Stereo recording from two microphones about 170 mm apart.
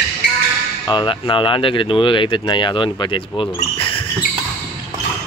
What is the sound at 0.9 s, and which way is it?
Speech, 30° left (ahead or behind).